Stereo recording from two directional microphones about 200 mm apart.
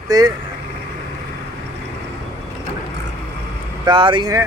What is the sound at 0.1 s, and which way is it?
Speech, 20° right (ahead or behind).